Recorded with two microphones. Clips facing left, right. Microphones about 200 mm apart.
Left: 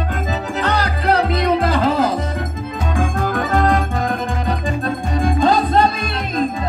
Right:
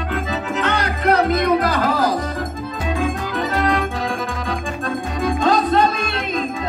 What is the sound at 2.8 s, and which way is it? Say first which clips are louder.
Music: left 2 dB; 50° left (ahead or behind).